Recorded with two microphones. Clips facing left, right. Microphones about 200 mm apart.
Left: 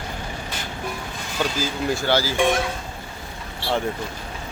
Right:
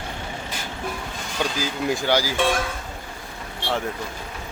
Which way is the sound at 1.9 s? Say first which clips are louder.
Even; 15° right (ahead or behind).